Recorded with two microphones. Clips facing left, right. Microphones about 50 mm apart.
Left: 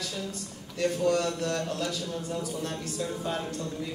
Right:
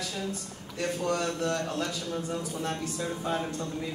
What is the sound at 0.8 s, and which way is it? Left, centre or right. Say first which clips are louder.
Speech: left 4 dB; right.